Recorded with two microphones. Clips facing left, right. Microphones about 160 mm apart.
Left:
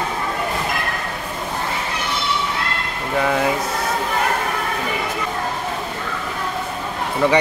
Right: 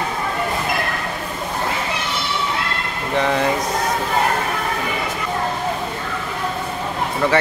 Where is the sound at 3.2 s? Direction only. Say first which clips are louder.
Even; 5° left (ahead or behind).